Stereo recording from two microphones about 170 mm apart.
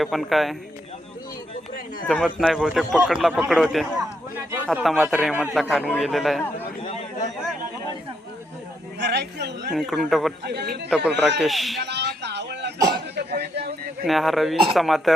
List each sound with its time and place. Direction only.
0.0 s a man's voice: centre (ahead or behind)
2.0 s a man's voice: 5° left (ahead or behind)
4.5 s a sound: 10° right (ahead or behind)
4.8 s a man's voice: 5° right (ahead or behind)
6.8 s a sound: 40° left (ahead or behind)
9.0 s speech: 80° right
9.7 s a man's voice: centre (ahead or behind)
10.4 s a man's voice: 70° right (ahead or behind)
11.2 s a man's voice: centre (ahead or behind)
11.8 s a sound: 80° right
13.1 s a sound: 70° right (ahead or behind)
14.0 s a man's voice: centre (ahead or behind)